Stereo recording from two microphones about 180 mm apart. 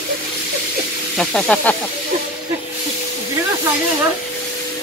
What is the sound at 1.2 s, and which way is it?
Speech, 5° left (ahead or behind).